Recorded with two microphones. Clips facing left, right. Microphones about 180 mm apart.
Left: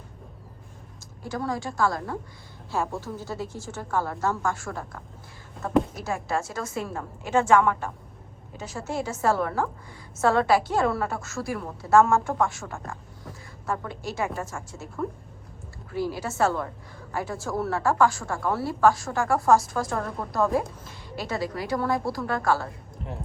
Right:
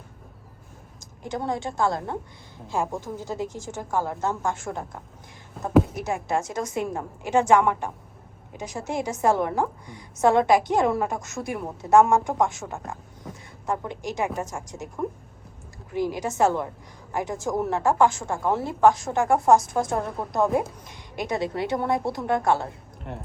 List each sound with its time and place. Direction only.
1.2 s a woman's voice: 20° right (ahead or behind)